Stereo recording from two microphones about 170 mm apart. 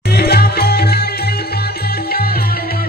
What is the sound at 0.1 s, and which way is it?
Music, 70° left (ahead or behind).